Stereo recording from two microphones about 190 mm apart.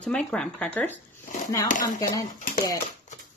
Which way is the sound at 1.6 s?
40° left (ahead or behind).